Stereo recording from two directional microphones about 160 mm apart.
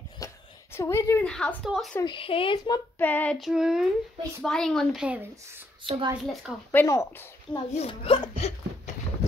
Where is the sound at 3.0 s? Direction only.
10° left (ahead or behind).